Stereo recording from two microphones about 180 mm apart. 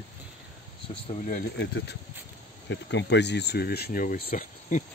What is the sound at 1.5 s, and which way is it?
Speech, 75° left (ahead or behind).